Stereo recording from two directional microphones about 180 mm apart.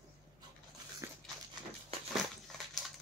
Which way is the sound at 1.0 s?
15° right (ahead or behind).